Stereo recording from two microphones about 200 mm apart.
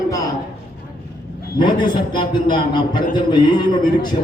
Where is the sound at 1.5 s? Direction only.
20° left (ahead or behind).